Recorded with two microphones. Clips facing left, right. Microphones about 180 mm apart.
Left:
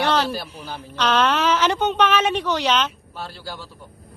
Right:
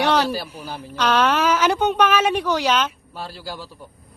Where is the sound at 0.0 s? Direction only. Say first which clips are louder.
Right 2 dB; 10° right (ahead or behind).